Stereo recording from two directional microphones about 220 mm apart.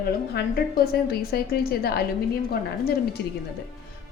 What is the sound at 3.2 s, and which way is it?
Speech, 50° left (ahead or behind).